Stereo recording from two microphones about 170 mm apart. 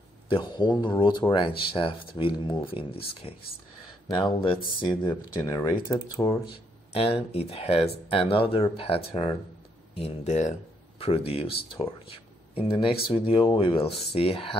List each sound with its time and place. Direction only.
0.3 s speech: 25° left (ahead or behind)
4.8 s speech: 15° left (ahead or behind)
6.9 s speech: 35° left (ahead or behind)